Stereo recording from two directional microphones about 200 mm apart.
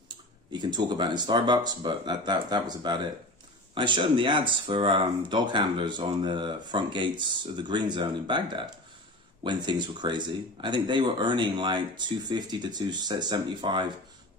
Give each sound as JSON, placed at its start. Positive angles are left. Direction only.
{"t": 0.5, "sound": "speech", "side_deg": -20}